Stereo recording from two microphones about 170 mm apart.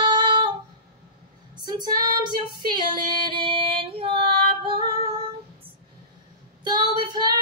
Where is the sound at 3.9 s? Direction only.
35° right (ahead or behind).